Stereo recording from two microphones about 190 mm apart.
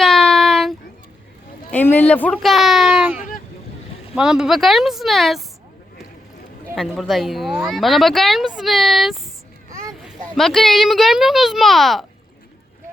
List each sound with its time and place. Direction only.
0.0 s a sound: centre (ahead or behind)
1.7 s speech: 10° left (ahead or behind)
6.7 s speech: centre (ahead or behind)
10.3 s speech: centre (ahead or behind)